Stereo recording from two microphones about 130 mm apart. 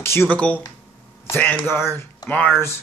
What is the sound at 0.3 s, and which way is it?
Speech, 10° left (ahead or behind).